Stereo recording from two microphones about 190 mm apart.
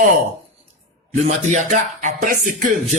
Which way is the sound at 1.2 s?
40° right (ahead or behind).